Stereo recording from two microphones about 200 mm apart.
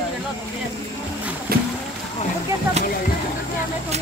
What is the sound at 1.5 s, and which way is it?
Boat, 50° right (ahead or behind).